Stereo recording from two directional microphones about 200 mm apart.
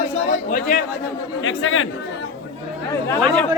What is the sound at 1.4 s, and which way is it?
Speech, 75° left (ahead or behind).